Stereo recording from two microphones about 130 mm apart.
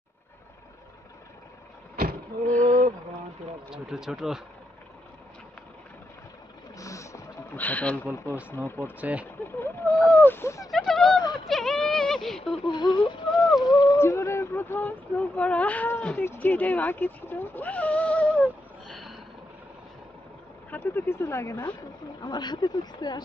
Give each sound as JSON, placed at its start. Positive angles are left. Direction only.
{"t": 2.6, "sound": "a sound", "side_deg": -85}
{"t": 3.7, "sound": "speech", "side_deg": -5}
{"t": 6.8, "sound": "a sound", "side_deg": 25}
{"t": 7.5, "sound": "speech", "side_deg": 10}
{"t": 8.8, "sound": "speech", "side_deg": -10}
{"t": 9.6, "sound": "speech", "side_deg": 20}
{"t": 10.7, "sound": "a sound", "side_deg": 0}
{"t": 12.0, "sound": "speech", "side_deg": 5}
{"t": 12.6, "sound": "a sound", "side_deg": 35}
{"t": 13.6, "sound": "speech", "side_deg": 30}
{"t": 18.9, "sound": "vehicle", "side_deg": 0}
{"t": 20.7, "sound": "speech", "side_deg": 15}
{"t": 22.2, "sound": "speech", "side_deg": 35}